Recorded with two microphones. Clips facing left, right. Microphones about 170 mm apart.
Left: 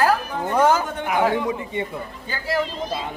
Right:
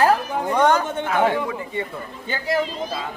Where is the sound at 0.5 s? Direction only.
5° left (ahead or behind).